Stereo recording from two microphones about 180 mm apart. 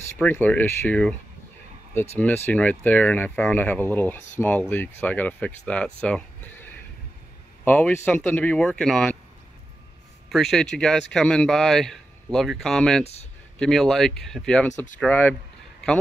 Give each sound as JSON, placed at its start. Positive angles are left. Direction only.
{"t": 0.2, "sound": "speech", "side_deg": 10}
{"t": 2.1, "sound": "speech", "side_deg": 10}
{"t": 7.6, "sound": "speech", "side_deg": 10}
{"t": 10.3, "sound": "speech", "side_deg": 0}
{"t": 13.0, "sound": "speech", "side_deg": 35}
{"t": 13.6, "sound": "speech", "side_deg": 0}